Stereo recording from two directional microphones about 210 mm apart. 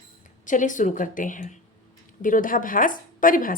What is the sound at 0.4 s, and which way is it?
A woman's voice, 40° left (ahead or behind).